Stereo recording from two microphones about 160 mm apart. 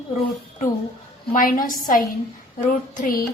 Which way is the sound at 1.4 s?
60° left (ahead or behind).